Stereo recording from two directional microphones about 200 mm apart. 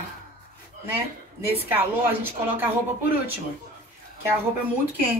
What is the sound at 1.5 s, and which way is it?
Speech, 10° right (ahead or behind).